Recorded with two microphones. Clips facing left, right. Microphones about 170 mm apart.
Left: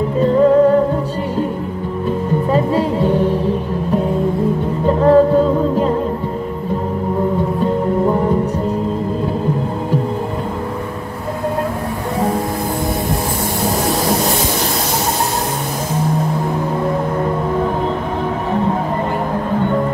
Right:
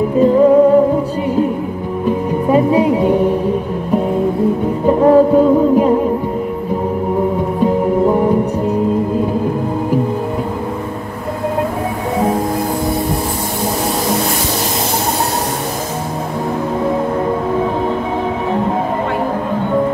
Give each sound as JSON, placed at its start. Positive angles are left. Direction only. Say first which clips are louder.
{"t": 0.2, "sound": "music", "louder": "right 2 dB", "side_deg": -5}
{"t": 2.5, "sound": "music", "louder": "right 6 dB", "side_deg": -10}
{"t": 4.8, "sound": "music", "louder": "right 2 dB", "side_deg": -10}